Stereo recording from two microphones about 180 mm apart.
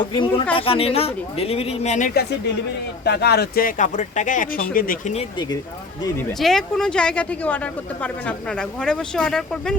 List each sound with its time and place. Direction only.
0.0 s speech: 25° left (ahead or behind)
3.0 s speech: 65° left (ahead or behind)
6.4 s speech: centre (ahead or behind)